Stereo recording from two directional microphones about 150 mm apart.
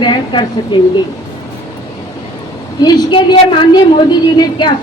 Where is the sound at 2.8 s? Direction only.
30° left (ahead or behind).